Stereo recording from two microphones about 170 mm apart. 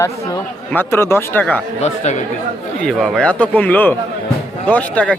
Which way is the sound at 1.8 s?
45° left (ahead or behind).